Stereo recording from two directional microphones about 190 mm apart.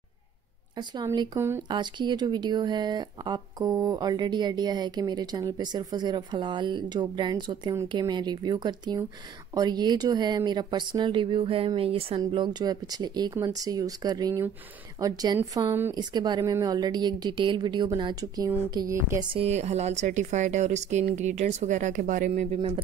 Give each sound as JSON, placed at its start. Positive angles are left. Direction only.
{"t": 0.7, "sound": "speech", "side_deg": -20}
{"t": 19.3, "sound": "speech", "side_deg": -35}